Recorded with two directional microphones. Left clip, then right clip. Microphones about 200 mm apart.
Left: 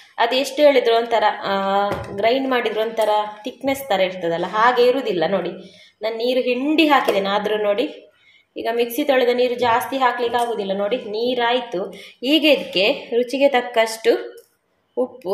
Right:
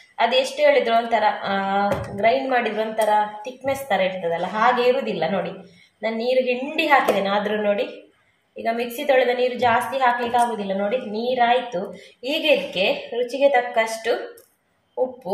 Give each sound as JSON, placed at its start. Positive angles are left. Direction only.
{"t": 0.1, "sound": "a woman's voice", "side_deg": 55}